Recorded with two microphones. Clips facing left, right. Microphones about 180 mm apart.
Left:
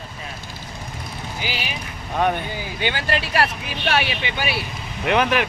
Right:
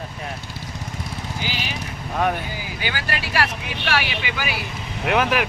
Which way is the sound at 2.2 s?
Centre (ahead or behind).